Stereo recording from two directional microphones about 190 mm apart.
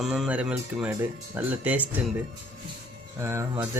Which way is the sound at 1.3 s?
10° right (ahead or behind).